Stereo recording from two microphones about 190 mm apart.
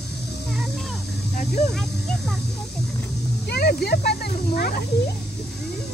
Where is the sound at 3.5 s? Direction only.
55° left (ahead or behind).